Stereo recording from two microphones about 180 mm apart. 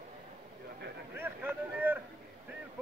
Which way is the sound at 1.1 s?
10° right (ahead or behind).